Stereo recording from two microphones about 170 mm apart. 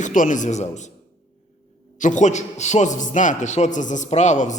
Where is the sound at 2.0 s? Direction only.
45° left (ahead or behind).